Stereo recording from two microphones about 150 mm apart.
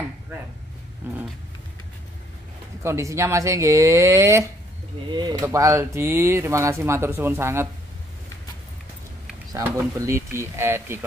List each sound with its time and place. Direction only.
1.0 s dog: 10° right (ahead or behind)
2.8 s speech: 20° right (ahead or behind)
9.6 s speech: 20° right (ahead or behind)